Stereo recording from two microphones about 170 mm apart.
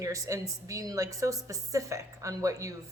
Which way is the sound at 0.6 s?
20° right (ahead or behind).